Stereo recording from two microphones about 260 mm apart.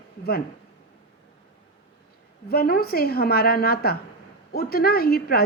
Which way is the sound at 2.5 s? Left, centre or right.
Left.